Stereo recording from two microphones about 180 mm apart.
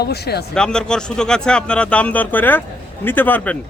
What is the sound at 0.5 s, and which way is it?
A man's voice, 5° left (ahead or behind).